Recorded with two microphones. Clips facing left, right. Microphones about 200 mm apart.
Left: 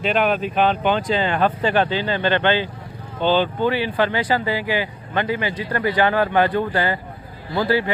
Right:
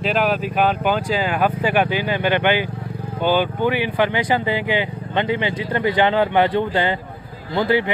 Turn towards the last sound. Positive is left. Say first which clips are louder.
# right 1 dB
turn(degrees=-20)  # may be behind; listen again after turning